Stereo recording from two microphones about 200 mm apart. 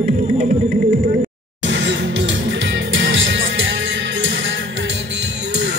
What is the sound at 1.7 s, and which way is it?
Music, 60° right (ahead or behind).